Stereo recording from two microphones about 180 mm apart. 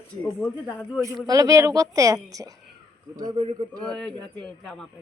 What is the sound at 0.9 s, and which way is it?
A woman's voice, 20° right (ahead or behind).